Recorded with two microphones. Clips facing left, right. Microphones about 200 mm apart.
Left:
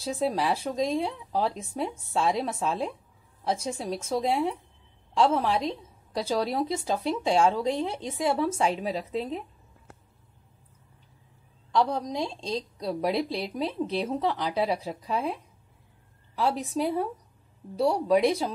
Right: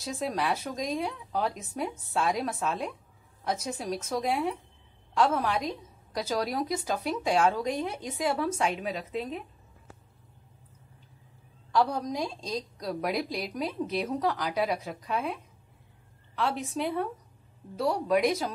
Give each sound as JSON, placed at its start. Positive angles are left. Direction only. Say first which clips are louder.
{"t": 0.0, "sound": "a woman's voice", "louder": "left 4 dB", "side_deg": 30}
{"t": 11.7, "sound": "a woman's voice", "louder": "left 1 dB", "side_deg": 20}
{"t": 16.3, "sound": "speech", "louder": "left 3 dB", "side_deg": 35}